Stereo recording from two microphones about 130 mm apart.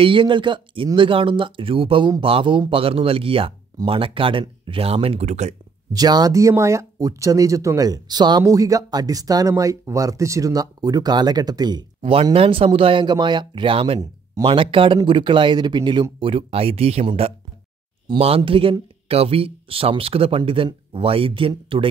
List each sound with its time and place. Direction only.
0.0 s speech: 40° right (ahead or behind); by 5.6 s 60° right (ahead or behind)
5.9 s speech: 30° right (ahead or behind)
12.0 s speech: 45° right (ahead or behind)